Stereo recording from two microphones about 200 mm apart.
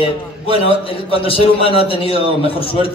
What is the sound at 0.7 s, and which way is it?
A man's voice, 25° left (ahead or behind).